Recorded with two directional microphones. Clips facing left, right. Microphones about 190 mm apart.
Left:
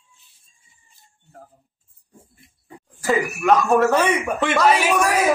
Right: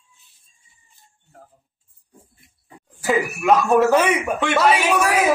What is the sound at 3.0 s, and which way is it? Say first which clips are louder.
A man's voice: even; 5° right (ahead or behind).